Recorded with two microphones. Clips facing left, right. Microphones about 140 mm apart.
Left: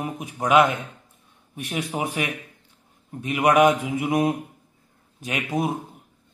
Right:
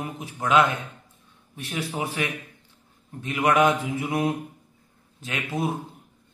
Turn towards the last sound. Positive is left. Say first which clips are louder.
# left 3 dB
turn(degrees=20)  # may be behind; listen again after turning